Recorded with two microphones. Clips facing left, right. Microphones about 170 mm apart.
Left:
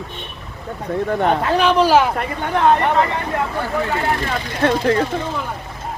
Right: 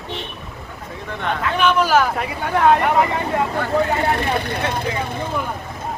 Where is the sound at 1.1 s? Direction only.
40° left (ahead or behind).